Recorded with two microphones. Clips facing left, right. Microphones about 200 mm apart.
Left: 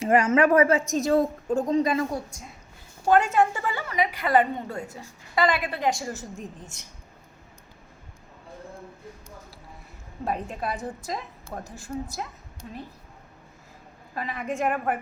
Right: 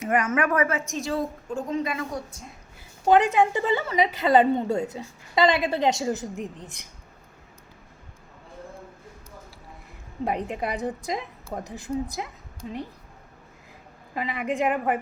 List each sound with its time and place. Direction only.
0.0 s a woman's voice: 30° left (ahead or behind)
3.1 s a woman's voice: 15° right (ahead or behind)
10.2 s a woman's voice: 20° right (ahead or behind)
14.1 s a woman's voice: 15° right (ahead or behind)